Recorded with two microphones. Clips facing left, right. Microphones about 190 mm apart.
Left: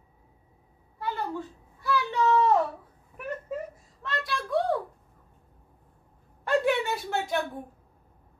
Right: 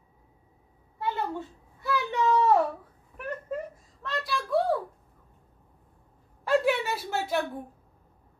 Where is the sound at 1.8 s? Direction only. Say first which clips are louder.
Left 1 dB; 20° right (ahead or behind).